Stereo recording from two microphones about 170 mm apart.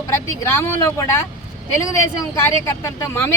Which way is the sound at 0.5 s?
15° left (ahead or behind).